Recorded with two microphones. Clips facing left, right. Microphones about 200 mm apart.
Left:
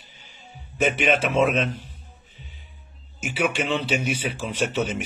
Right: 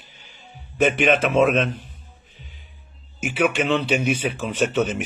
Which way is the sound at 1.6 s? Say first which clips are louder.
Right 3 dB; 10° right (ahead or behind).